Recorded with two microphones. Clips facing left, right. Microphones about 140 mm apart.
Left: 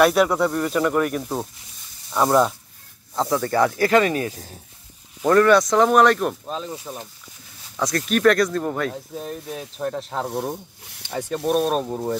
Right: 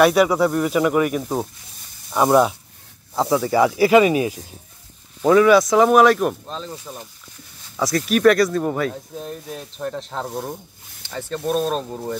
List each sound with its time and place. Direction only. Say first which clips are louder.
0.0 s speech: right 2 dB; centre (ahead or behind)
6.7 s speech: left 2 dB; 15° left (ahead or behind)
7.7 s speech: right 2 dB; 5° right (ahead or behind)
10.5 s speech: left 1 dB; 20° left (ahead or behind)
11.3 s speech: left 1 dB; 5° left (ahead or behind)